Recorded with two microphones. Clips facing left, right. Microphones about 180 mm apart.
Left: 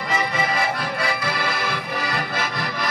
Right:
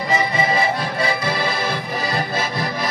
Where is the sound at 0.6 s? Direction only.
25° right (ahead or behind).